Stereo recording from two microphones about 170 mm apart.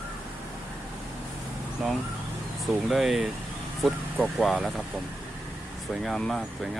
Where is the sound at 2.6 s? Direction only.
Centre (ahead or behind).